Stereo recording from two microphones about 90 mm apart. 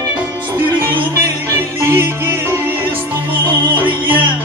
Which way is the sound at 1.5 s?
25° right (ahead or behind).